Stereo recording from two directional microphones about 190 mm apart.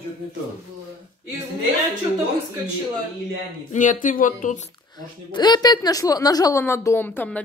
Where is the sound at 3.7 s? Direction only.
45° left (ahead or behind).